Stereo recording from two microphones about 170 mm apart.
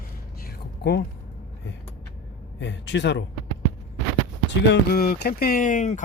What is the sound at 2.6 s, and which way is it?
Speech, 90° left.